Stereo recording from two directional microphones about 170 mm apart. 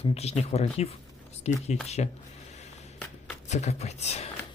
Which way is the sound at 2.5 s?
40° left (ahead or behind).